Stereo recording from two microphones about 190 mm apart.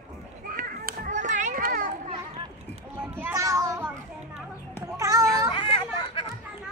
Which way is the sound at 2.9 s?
10° right (ahead or behind).